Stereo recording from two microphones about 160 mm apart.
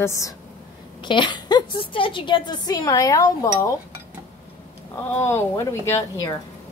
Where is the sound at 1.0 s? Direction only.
30° left (ahead or behind).